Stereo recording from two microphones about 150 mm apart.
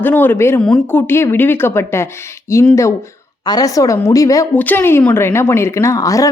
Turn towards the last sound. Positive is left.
turn(degrees=25)  # may be behind; listen again after turning